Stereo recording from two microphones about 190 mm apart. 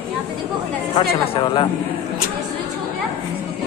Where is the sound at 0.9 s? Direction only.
30° left (ahead or behind).